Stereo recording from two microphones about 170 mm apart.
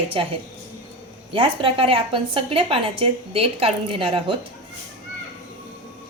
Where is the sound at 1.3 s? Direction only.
30° right (ahead or behind).